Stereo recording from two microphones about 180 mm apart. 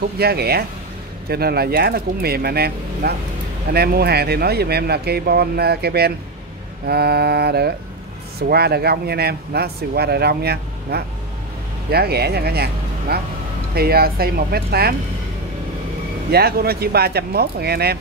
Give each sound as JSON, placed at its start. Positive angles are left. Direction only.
{"t": 0.2, "sound": "speech", "side_deg": -60}
{"t": 16.3, "sound": "speech", "side_deg": -60}